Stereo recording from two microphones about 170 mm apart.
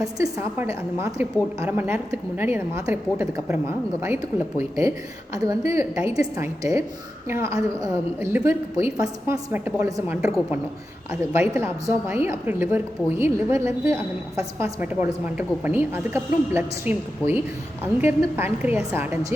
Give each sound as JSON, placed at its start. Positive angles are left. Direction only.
{"t": 0.0, "sound": "a woman's voice", "side_deg": -20}